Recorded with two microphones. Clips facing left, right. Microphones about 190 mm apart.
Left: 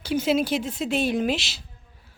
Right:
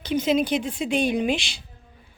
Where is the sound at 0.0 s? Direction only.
10° left (ahead or behind).